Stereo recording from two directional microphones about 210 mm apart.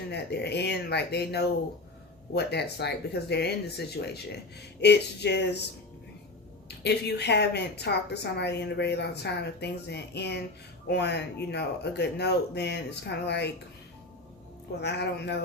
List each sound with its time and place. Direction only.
0.1 s speech: 50° left (ahead or behind)
6.7 s speech: 55° left (ahead or behind)
14.8 s speech: 55° left (ahead or behind)